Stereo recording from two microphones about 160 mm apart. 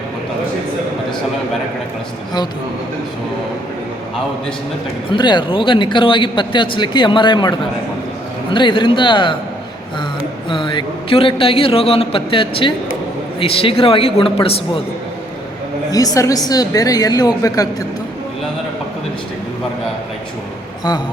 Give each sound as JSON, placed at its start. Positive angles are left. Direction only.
{"t": 5.0, "sound": "a man's voice", "side_deg": 30}
{"t": 10.5, "sound": "a man's voice", "side_deg": 30}
{"t": 15.9, "sound": "a woman's voice", "side_deg": 25}